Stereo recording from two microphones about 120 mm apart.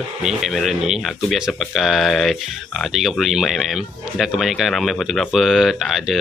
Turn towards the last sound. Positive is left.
turn(degrees=0)  # may be behind; listen again after turning